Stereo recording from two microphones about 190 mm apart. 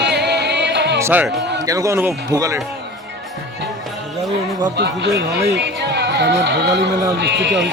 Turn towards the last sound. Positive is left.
turn(degrees=-65)  # may be behind; listen again after turning